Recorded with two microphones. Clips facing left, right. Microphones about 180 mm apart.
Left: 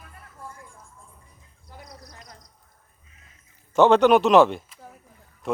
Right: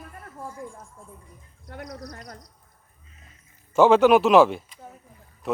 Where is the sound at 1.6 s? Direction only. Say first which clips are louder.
Right 8 dB; 60° right (ahead or behind).